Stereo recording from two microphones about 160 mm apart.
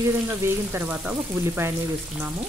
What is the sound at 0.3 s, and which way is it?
Speech, 15° right (ahead or behind).